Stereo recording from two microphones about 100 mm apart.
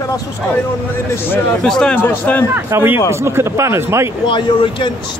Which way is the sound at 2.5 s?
20° right (ahead or behind).